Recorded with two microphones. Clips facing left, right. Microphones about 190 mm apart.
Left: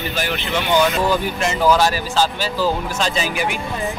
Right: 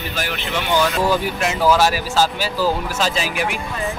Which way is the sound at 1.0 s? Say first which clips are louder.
Even; 5° right (ahead or behind).